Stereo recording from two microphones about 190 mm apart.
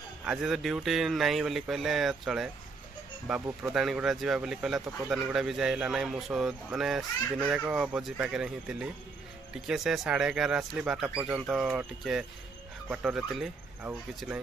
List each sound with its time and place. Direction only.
0.2 s speech: 5° right (ahead or behind)